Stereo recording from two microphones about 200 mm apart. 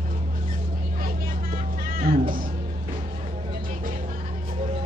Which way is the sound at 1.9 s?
45° right (ahead or behind).